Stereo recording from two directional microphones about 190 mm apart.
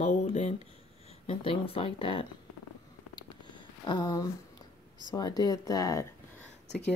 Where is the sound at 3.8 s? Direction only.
20° left (ahead or behind).